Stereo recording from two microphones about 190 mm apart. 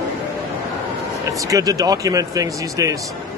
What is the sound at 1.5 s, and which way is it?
Speech, 20° right (ahead or behind).